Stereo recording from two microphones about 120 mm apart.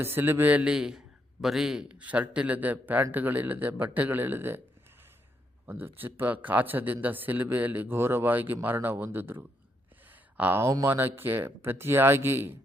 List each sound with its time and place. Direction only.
0.0 s a man's voice: 20° right (ahead or behind)
5.6 s a man's voice: 15° right (ahead or behind)